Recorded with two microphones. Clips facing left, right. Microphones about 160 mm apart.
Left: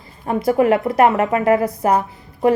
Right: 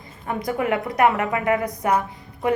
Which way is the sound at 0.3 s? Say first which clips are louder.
Left 8 dB; 30° left (ahead or behind).